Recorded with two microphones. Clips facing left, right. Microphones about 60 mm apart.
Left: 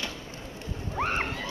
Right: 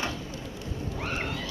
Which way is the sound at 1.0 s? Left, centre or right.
Left.